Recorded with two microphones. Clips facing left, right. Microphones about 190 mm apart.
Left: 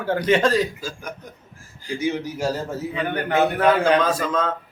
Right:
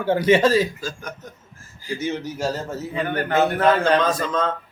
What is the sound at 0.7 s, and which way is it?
A man's voice, 10° left (ahead or behind).